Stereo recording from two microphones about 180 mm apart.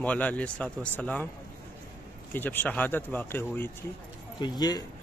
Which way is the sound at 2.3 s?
10° left (ahead or behind).